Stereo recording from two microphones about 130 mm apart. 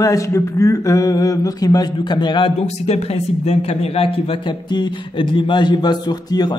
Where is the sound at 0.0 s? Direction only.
25° left (ahead or behind).